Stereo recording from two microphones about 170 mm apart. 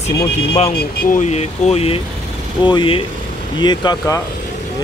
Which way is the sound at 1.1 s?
40° left (ahead or behind).